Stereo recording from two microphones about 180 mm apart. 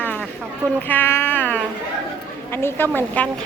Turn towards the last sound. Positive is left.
turn(degrees=10)  # may be behind; listen again after turning